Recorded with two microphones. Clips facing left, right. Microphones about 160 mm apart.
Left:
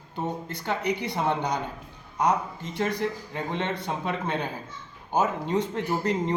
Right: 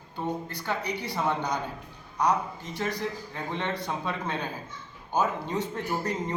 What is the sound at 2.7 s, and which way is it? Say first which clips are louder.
A man's voice: left 4 dB; 20° left (ahead or behind).